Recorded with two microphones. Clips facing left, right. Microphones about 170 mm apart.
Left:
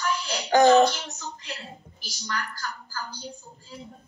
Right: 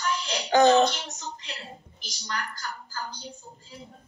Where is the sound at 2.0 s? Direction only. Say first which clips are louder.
Left 1 dB; 20° right (ahead or behind).